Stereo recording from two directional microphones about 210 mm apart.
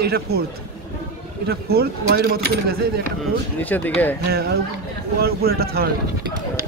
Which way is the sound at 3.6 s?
10° left (ahead or behind).